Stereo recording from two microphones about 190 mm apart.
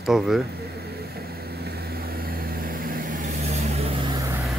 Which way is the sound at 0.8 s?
55° right (ahead or behind).